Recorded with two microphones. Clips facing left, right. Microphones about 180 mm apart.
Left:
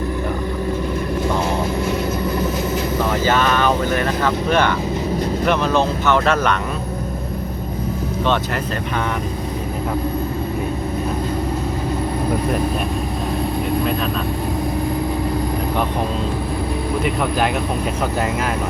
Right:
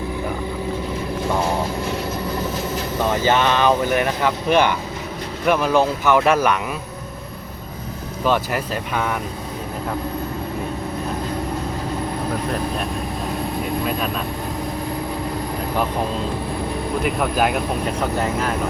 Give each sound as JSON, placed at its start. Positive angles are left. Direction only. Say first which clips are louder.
{"t": 3.1, "sound": "speech", "louder": "right 1 dB", "side_deg": -20}
{"t": 17.0, "sound": "speech", "louder": "right 1 dB", "side_deg": -5}